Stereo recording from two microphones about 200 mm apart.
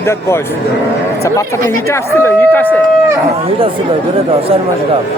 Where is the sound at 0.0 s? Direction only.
15° left (ahead or behind).